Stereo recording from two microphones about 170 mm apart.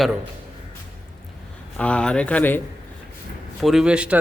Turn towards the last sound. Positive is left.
turn(degrees=-5)  # may be behind; listen again after turning